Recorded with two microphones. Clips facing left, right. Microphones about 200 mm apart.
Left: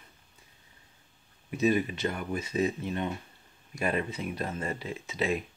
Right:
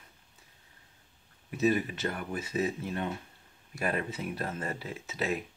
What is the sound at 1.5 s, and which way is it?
Speech, centre (ahead or behind).